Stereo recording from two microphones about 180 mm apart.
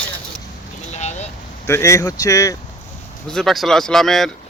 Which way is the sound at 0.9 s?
40° left (ahead or behind).